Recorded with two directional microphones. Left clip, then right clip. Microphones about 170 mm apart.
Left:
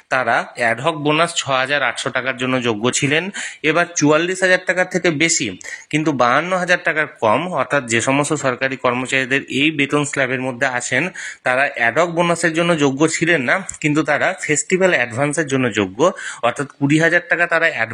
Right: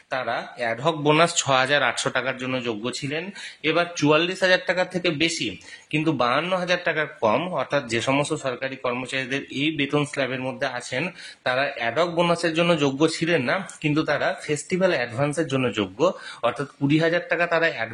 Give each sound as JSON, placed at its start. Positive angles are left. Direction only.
{"t": 0.1, "sound": "speech", "side_deg": 30}
{"t": 0.8, "sound": "a man's voice", "side_deg": 10}
{"t": 2.4, "sound": "speech", "side_deg": 35}
{"t": 3.6, "sound": "a man's voice", "side_deg": 25}
{"t": 4.9, "sound": "speech", "side_deg": 30}